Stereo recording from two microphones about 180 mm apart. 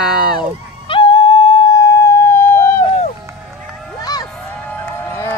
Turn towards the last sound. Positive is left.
turn(degrees=15)  # may be behind; listen again after turning